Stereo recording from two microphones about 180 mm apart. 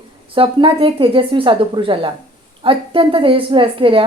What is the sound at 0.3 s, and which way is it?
A woman's voice, 30° right (ahead or behind).